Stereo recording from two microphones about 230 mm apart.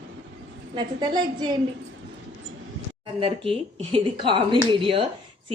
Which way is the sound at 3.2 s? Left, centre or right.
Right.